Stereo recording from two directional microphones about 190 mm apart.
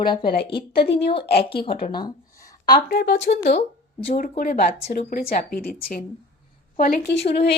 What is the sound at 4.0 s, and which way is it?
Speech, 45° left (ahead or behind).